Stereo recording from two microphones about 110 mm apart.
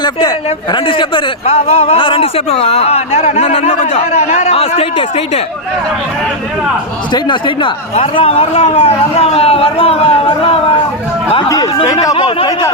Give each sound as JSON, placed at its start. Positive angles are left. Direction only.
{"t": 0.0, "sound": "a man's voice", "side_deg": 40}
{"t": 7.1, "sound": "speech", "side_deg": 45}
{"t": 8.1, "sound": "a man's voice", "side_deg": 60}
{"t": 11.4, "sound": "speech", "side_deg": 35}
{"t": 12.1, "sound": "speech", "side_deg": 55}